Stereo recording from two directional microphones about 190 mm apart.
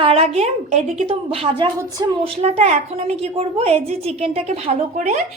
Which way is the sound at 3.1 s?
30° right (ahead or behind).